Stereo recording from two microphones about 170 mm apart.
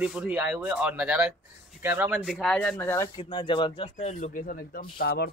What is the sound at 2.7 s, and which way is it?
Speech, 15° left (ahead or behind).